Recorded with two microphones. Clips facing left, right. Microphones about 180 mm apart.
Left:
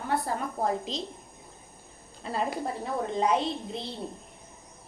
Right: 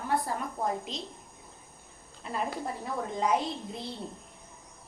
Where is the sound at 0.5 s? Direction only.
35° left (ahead or behind).